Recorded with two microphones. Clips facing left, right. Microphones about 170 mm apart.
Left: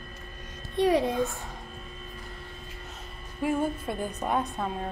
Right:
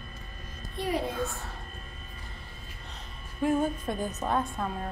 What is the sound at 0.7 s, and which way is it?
Speech, 90° left.